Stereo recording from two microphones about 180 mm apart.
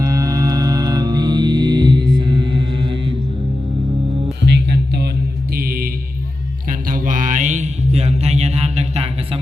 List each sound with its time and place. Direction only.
0.0 s music: 20° right (ahead or behind)
4.4 s music: 70° right (ahead or behind)
5.5 s music: 55° right (ahead or behind)
6.7 s mantra: 50° right (ahead or behind)